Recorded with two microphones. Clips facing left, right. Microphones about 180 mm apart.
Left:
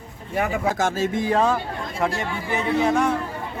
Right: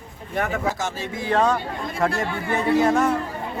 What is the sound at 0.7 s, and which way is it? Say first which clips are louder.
Speech: left 6 dB; 50° left (ahead or behind).